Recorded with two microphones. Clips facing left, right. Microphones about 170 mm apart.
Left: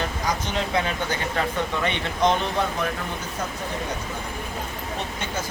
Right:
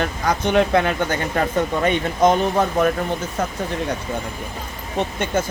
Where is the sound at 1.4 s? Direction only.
45° right (ahead or behind).